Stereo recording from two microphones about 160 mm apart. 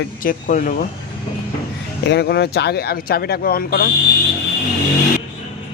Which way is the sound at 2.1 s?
90° left.